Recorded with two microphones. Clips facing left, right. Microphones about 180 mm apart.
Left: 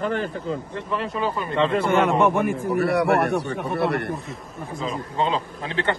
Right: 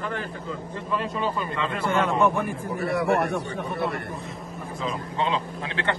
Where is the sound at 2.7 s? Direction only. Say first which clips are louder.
Left 3 dB; 70° left (ahead or behind).